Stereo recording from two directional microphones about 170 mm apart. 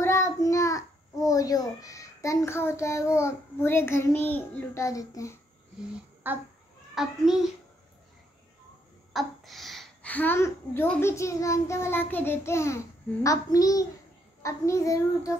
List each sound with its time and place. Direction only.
0.0 s a child's voice: 15° left (ahead or behind)
6.2 s a child's voice: 10° right (ahead or behind)
9.1 s a child's voice: centre (ahead or behind); by 13.8 s 20° left (ahead or behind)
14.4 s child singing: 20° left (ahead or behind)